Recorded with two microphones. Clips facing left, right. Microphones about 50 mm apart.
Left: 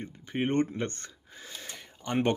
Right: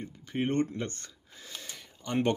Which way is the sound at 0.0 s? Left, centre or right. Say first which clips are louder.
Left 1 dB; left.